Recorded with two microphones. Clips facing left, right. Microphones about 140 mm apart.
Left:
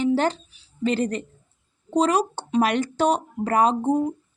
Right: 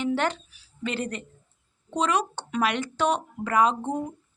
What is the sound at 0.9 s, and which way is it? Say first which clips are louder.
A woman's voice: left 7 dB; 40° left (ahead or behind).